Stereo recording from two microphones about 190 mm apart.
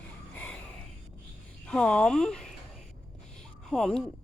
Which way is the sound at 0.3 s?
10° left (ahead or behind).